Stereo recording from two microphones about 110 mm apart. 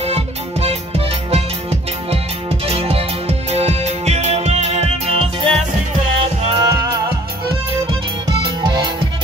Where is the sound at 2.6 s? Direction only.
60° right (ahead or behind).